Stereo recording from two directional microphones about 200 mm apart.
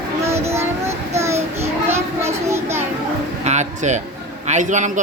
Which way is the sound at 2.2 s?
15° right (ahead or behind).